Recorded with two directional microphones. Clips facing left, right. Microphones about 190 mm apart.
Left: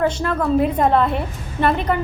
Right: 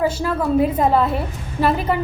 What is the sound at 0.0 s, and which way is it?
A woman's voice, 5° right (ahead or behind).